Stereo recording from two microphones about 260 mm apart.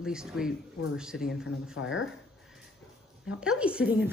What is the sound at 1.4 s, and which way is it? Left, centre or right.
Speech, left.